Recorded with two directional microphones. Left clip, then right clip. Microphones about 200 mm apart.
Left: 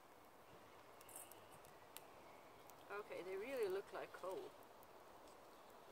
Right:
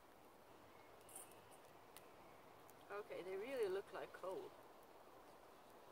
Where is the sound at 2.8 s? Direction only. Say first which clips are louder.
Even; centre (ahead or behind).